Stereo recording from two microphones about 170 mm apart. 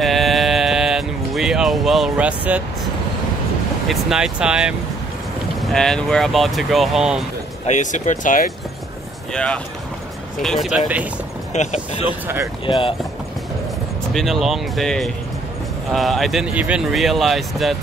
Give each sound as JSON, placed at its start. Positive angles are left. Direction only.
{"t": 0.0, "sound": "a sound", "side_deg": 0}
{"t": 3.8, "sound": "speech", "side_deg": 0}
{"t": 7.6, "sound": "speech", "side_deg": 45}
{"t": 9.3, "sound": "speech", "side_deg": 5}
{"t": 11.5, "sound": "speech", "side_deg": 45}
{"t": 14.1, "sound": "speech", "side_deg": 0}